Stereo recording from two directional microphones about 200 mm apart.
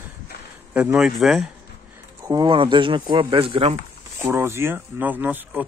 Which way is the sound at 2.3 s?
25° right (ahead or behind).